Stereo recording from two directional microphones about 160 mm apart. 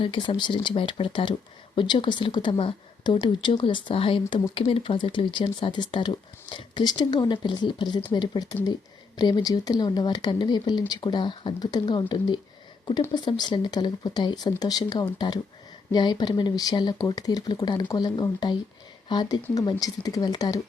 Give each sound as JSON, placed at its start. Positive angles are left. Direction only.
{"t": 0.0, "sound": "speech", "side_deg": 30}